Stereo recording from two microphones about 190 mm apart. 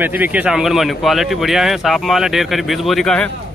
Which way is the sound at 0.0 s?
10° right (ahead or behind).